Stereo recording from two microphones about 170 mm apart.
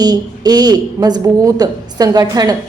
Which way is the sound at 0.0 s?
25° right (ahead or behind).